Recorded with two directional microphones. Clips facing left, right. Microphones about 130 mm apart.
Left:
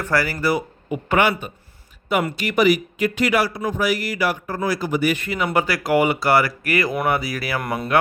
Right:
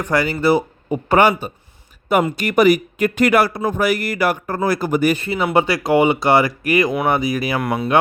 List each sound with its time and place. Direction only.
0.0 s a man's voice: 20° right (ahead or behind); by 5.1 s 50° right (ahead or behind)
5.1 s speech: 30° right (ahead or behind)
7.6 s speech: centre (ahead or behind)